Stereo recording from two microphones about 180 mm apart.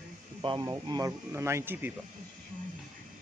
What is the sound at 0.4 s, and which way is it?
Speech, 25° right (ahead or behind).